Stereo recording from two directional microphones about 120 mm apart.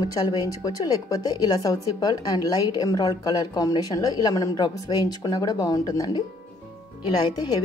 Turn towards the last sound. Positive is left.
turn(degrees=35)  # may be behind; listen again after turning